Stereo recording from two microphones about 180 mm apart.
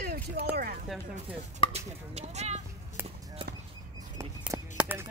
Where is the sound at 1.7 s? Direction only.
35° right (ahead or behind).